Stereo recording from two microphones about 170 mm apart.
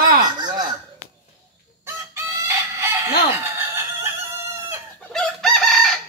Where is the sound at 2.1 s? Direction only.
15° right (ahead or behind).